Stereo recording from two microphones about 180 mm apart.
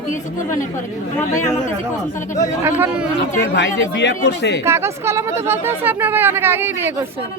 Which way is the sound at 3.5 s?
75° left (ahead or behind).